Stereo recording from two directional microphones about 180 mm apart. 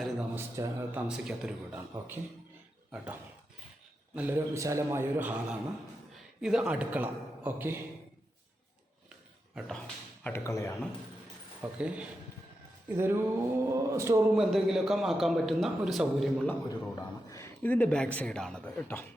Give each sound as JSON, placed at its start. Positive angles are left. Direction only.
{"t": 0.0, "sound": "a sound", "side_deg": -5}
{"t": 0.5, "sound": "speech", "side_deg": -15}
{"t": 4.1, "sound": "speech", "side_deg": -10}
{"t": 9.6, "sound": "a man's voice", "side_deg": 0}
{"t": 11.6, "sound": "speech", "side_deg": -5}
{"t": 14.3, "sound": "a man's voice", "side_deg": 0}
{"t": 16.5, "sound": "a man's voice", "side_deg": 15}